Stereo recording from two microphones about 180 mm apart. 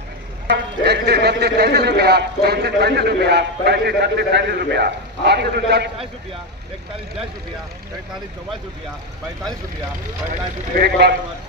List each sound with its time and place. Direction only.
0.5 s a man's voice: 65° right (ahead or behind)
10.8 s a man's voice: 65° right (ahead or behind)